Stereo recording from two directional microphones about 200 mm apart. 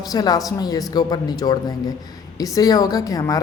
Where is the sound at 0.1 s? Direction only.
20° left (ahead or behind).